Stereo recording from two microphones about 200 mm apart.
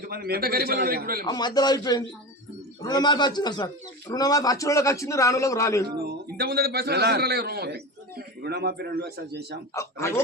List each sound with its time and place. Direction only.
0.1 s a man's voice: 50° right (ahead or behind)
1.2 s a man's voice: 20° left (ahead or behind)
6.0 s a man's voice: 55° right (ahead or behind)
9.7 s a man's voice: 15° left (ahead or behind)